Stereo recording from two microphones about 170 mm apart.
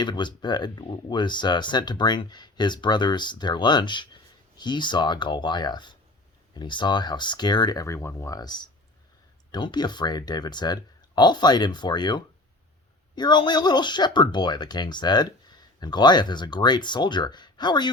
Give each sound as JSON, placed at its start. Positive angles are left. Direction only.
{"t": 0.0, "sound": "speech", "side_deg": 25}